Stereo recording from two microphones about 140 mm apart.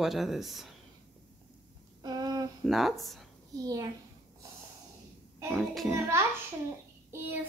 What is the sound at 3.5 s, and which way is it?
Speech, 25° right (ahead or behind).